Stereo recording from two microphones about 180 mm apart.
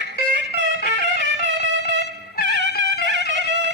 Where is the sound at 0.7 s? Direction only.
60° left (ahead or behind).